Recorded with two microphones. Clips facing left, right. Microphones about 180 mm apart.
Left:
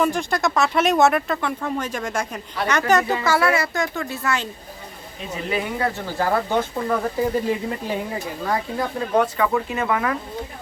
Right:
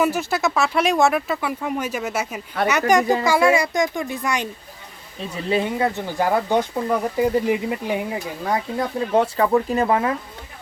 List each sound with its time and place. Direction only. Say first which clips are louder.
0.0 s a child's voice: right 1 dB; 5° right (ahead or behind)
5.4 s speech: right 3 dB; 30° right (ahead or behind)